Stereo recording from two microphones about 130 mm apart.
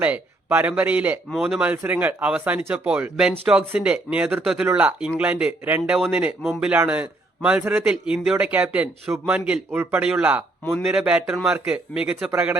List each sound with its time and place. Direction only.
0.0 s a man's voice: 15° right (ahead or behind)
6.7 s a man's voice: 10° right (ahead or behind)